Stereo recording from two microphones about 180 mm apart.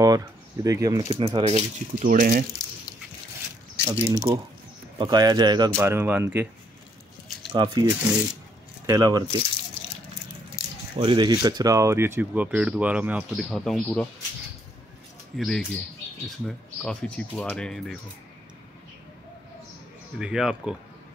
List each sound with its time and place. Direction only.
0.0 s speech: 20° right (ahead or behind)
1.1 s speech: 35° right (ahead or behind)
3.8 s speech: 20° right (ahead or behind)
5.8 s speech: 15° right (ahead or behind)
7.5 s speech: 25° right (ahead or behind)
11.0 s speech: 25° right (ahead or behind); by 14.0 s 5° left (ahead or behind)
15.3 s speech: centre (ahead or behind)
20.2 s speech: 5° right (ahead or behind)